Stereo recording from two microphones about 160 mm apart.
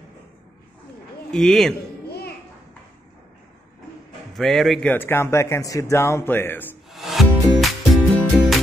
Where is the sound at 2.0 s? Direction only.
80° left.